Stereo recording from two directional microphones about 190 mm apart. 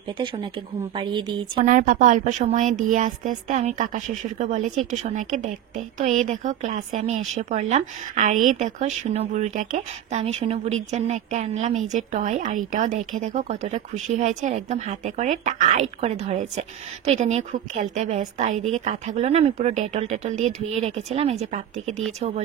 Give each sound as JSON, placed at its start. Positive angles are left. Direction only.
{"t": 0.9, "sound": "a woman's voice", "side_deg": -25}
{"t": 1.6, "sound": "speech", "side_deg": -45}